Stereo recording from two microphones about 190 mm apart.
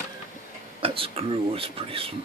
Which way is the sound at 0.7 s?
30° right (ahead or behind).